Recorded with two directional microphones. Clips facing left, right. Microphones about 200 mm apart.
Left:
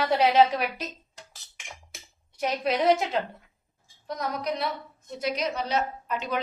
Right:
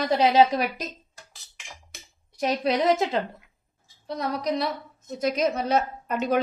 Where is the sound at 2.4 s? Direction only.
35° right (ahead or behind).